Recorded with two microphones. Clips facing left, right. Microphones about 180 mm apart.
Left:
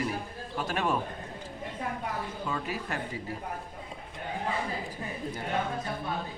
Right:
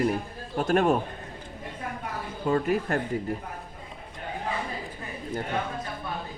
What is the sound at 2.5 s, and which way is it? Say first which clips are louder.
Speech: right 12 dB; 50° right (ahead or behind).